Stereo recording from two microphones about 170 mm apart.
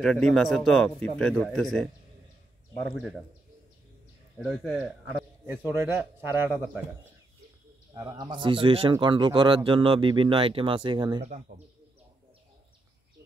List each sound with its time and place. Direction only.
0.0 s speech: 5° left (ahead or behind)
4.4 s speech: 5° right (ahead or behind)
7.9 s speech: 20° right (ahead or behind)
11.2 s speech: 45° right (ahead or behind)